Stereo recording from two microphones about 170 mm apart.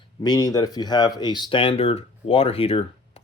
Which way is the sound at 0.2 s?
20° left (ahead or behind).